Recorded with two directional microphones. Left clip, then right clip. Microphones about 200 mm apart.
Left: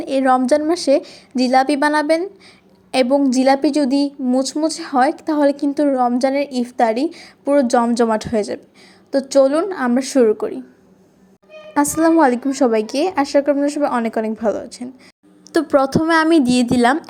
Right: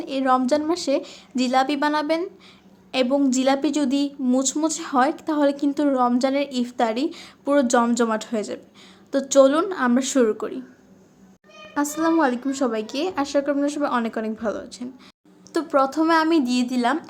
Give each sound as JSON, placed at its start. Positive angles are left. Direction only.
{"t": 0.0, "sound": "a woman's voice", "side_deg": 20}
{"t": 11.7, "sound": "a woman's voice", "side_deg": 25}